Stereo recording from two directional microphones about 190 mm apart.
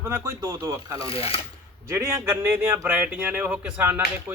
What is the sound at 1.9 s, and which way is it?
Speech, 15° right (ahead or behind).